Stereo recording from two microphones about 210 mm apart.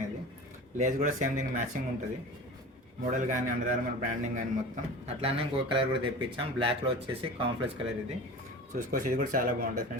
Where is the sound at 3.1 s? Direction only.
35° right (ahead or behind).